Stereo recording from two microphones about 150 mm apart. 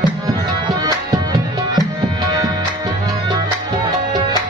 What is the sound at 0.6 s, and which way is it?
Tabla, 25° right (ahead or behind).